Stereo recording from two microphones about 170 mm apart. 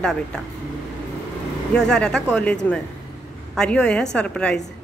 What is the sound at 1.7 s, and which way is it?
Speech, 5° left (ahead or behind).